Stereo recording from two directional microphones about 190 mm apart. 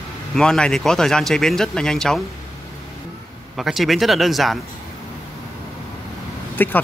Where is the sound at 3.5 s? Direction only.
Centre (ahead or behind).